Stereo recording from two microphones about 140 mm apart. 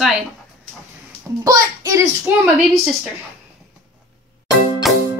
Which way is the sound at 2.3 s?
10° right (ahead or behind).